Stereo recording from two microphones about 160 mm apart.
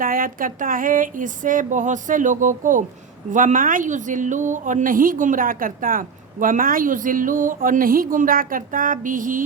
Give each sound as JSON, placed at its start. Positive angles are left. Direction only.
{"t": 0.0, "sound": "a woman's voice", "side_deg": -60}